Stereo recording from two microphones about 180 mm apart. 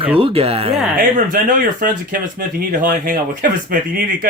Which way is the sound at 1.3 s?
50° right (ahead or behind).